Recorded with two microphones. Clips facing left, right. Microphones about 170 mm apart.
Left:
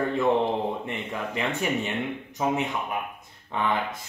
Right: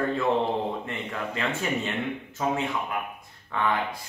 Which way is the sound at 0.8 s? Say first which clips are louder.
Left 1 dB; 15° left (ahead or behind).